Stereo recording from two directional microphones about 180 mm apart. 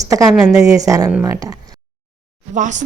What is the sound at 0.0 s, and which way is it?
Speech, 20° right (ahead or behind).